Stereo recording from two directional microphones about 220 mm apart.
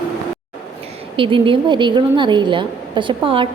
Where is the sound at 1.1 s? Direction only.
25° right (ahead or behind).